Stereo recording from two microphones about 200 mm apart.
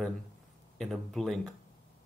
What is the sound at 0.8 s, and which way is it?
Speech, centre (ahead or behind).